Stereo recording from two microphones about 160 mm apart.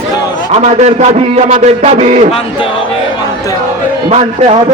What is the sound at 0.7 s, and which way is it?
A man's voice, 45° right (ahead or behind).